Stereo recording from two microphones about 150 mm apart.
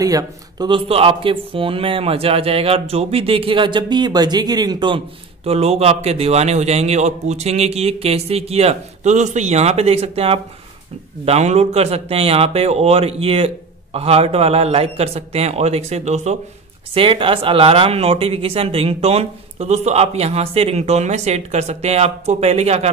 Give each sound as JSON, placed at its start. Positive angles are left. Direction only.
{"t": 0.0, "sound": "speech", "side_deg": -25}
{"t": 16.9, "sound": "speech", "side_deg": -35}